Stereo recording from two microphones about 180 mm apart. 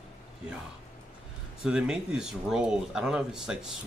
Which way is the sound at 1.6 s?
5° right (ahead or behind).